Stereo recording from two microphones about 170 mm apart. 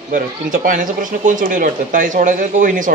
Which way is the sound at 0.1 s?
50° right (ahead or behind).